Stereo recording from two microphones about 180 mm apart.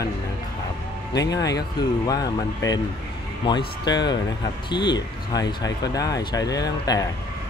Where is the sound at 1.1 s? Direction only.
20° left (ahead or behind).